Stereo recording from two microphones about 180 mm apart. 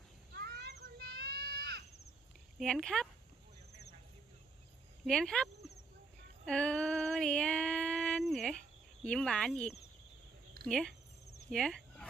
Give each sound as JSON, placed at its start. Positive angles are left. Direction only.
{"t": 0.4, "sound": "a sound", "side_deg": -65}
{"t": 2.6, "sound": "speech", "side_deg": 5}
{"t": 5.0, "sound": "speech", "side_deg": 5}
{"t": 6.4, "sound": "female singing", "side_deg": 5}
{"t": 9.0, "sound": "speech", "side_deg": 5}
{"t": 11.5, "sound": "a sound", "side_deg": 5}